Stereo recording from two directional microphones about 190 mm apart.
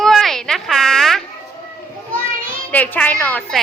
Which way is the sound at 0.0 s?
Centre (ahead or behind).